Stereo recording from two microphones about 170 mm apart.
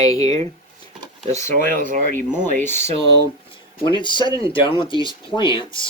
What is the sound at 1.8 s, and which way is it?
Speech, 50° right (ahead or behind).